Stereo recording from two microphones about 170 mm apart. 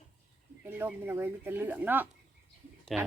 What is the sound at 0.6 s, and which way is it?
Speech, 10° right (ahead or behind).